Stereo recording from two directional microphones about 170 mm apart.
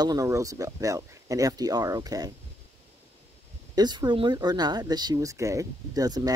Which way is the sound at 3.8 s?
25° right (ahead or behind).